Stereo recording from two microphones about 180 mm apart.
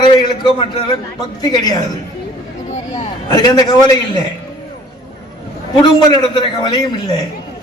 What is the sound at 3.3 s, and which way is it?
Speech, 20° left (ahead or behind).